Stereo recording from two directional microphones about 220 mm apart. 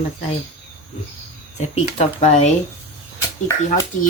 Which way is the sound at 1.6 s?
30° left (ahead or behind).